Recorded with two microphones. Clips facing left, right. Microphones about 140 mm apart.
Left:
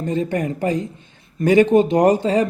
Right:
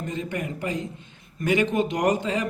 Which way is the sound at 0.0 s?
35° left (ahead or behind).